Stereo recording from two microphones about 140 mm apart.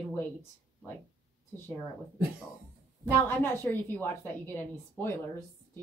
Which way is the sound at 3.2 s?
15° left (ahead or behind).